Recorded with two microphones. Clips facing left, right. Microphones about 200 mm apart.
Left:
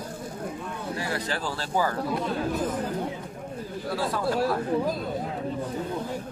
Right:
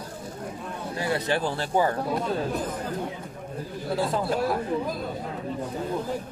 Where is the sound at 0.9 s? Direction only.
25° right (ahead or behind).